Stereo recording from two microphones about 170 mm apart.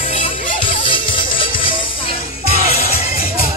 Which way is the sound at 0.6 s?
30° left (ahead or behind).